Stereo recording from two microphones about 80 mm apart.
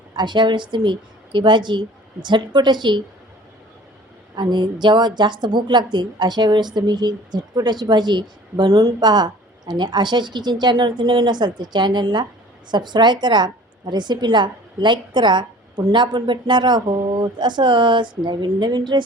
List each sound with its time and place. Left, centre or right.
0.1 s a woman's voice: right
4.4 s a woman's voice: right